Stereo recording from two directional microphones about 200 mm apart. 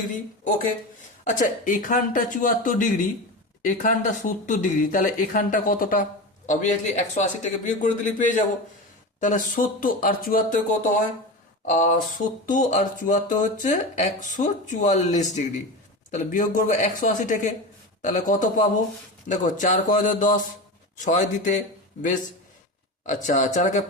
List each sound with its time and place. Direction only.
1.2 s speech: 40° left (ahead or behind)
23.0 s speech: 40° left (ahead or behind)